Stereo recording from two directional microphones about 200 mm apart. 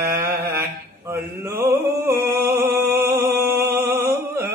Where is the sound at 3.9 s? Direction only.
10° right (ahead or behind).